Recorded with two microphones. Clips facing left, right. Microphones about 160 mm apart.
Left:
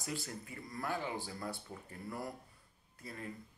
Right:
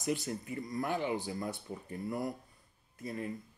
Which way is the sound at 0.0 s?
20° right (ahead or behind).